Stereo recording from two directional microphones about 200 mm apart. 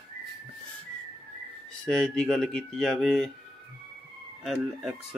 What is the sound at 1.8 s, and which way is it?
Speech, 5° left (ahead or behind).